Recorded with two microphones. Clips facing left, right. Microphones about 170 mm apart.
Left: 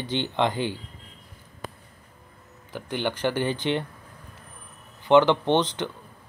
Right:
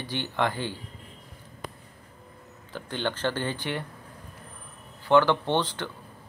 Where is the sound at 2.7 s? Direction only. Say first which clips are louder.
Left 2 dB; 15° left (ahead or behind).